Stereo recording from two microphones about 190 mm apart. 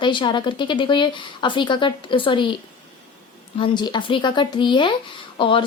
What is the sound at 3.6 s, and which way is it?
A woman's voice, 25° left (ahead or behind).